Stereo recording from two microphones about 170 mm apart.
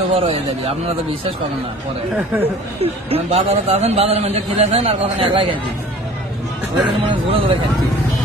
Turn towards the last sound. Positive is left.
turn(degrees=-30)  # may be behind; listen again after turning